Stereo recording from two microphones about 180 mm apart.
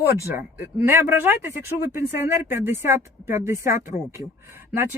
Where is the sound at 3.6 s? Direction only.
45° left (ahead or behind).